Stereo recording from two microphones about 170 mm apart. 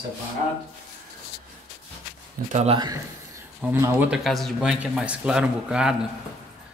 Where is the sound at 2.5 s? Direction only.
40° right (ahead or behind).